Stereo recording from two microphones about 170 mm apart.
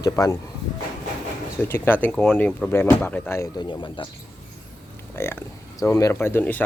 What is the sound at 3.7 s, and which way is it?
Speech, 30° left (ahead or behind).